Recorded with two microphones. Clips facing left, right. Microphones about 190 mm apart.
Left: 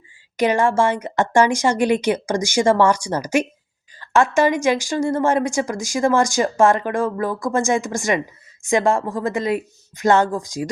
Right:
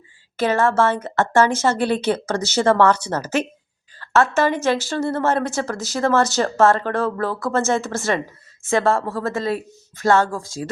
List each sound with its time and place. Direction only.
0.3 s a woman's voice: 15° left (ahead or behind)